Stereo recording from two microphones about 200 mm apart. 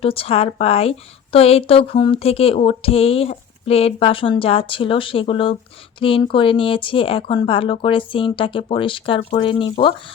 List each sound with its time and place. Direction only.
0.0 s a woman's voice: 25° left (ahead or behind)